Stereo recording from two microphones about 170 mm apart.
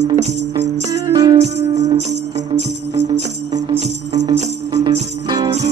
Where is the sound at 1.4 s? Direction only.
40° right (ahead or behind).